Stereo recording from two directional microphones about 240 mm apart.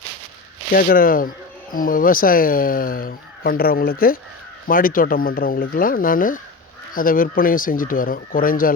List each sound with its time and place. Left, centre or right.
0.7 s speech: left